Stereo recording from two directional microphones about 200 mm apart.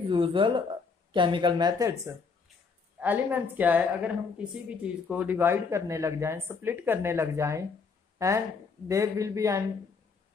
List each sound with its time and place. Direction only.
0.1 s a woman's voice: 25° right (ahead or behind)